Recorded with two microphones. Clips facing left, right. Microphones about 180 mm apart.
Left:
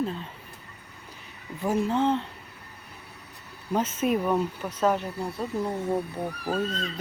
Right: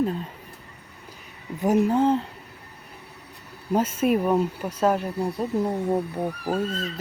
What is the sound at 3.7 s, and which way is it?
Speech, 10° right (ahead or behind).